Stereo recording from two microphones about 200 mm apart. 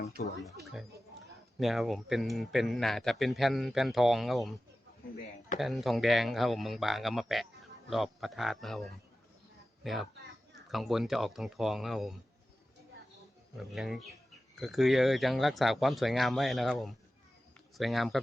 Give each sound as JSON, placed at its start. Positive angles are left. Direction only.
{"t": 0.2, "sound": "speech", "side_deg": 50}
{"t": 0.6, "sound": "speech", "side_deg": 0}
{"t": 5.5, "sound": "speech", "side_deg": 0}
{"t": 13.6, "sound": "speech", "side_deg": 0}